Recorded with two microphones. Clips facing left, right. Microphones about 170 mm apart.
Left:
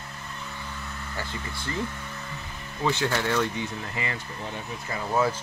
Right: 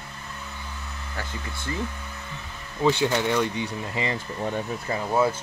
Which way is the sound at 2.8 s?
15° right (ahead or behind).